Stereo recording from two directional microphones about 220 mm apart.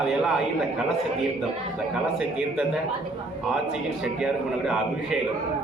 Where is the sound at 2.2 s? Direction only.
5° right (ahead or behind).